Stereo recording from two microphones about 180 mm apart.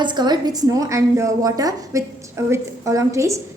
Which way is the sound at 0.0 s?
25° right (ahead or behind).